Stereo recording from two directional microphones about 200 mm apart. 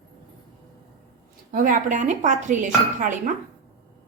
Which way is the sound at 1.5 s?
40° right (ahead or behind).